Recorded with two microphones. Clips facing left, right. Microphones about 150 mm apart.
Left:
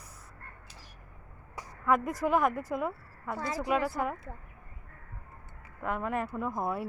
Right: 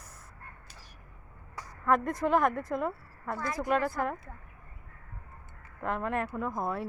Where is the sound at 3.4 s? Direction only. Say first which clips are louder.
Even; 30° left (ahead or behind).